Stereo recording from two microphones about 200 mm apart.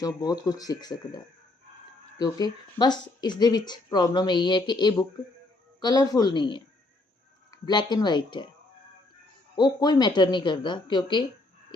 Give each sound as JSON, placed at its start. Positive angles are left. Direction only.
{"t": 0.0, "sound": "speech", "side_deg": 20}
{"t": 9.6, "sound": "speech", "side_deg": 20}